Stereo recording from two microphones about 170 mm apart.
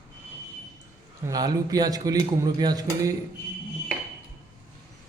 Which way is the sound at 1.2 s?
20° right (ahead or behind).